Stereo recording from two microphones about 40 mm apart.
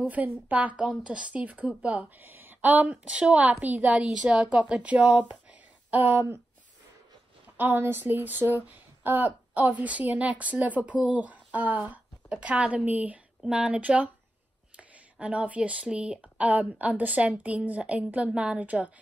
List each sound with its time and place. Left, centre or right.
0.1 s a woman's voice: right
2.1 s a sound: right
2.7 s speech: right
3.4 s a woman's voice: right
3.9 s speech: centre
4.6 s a woman's voice: right
5.9 s a sound: right
7.5 s a woman's voice: right
12.4 s a woman's voice: right
13.4 s speech: right
13.7 s a woman's voice: right
16.2 s a woman's voice: right
18.6 s a woman's voice: right